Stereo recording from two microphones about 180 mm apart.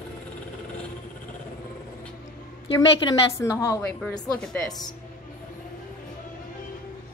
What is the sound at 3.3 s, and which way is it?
Speech, 15° left (ahead or behind).